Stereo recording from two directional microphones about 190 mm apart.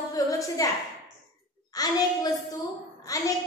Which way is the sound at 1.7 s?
20° left (ahead or behind).